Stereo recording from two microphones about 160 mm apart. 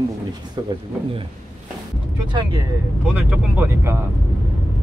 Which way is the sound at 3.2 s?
10° right (ahead or behind).